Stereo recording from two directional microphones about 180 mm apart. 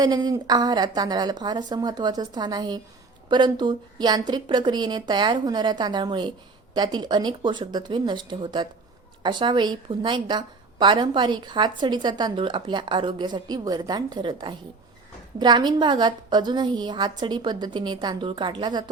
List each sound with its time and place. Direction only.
0.0 s a woman's voice: 20° right (ahead or behind)